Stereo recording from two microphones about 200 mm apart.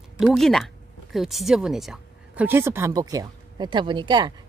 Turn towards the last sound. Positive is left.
turn(degrees=-20)  # may be behind; listen again after turning